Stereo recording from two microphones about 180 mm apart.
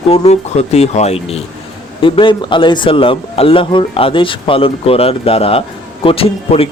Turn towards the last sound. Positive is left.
turn(degrees=30)  # may be behind; listen again after turning